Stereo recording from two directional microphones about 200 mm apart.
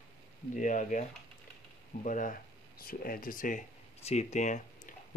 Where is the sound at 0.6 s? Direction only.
40° left (ahead or behind).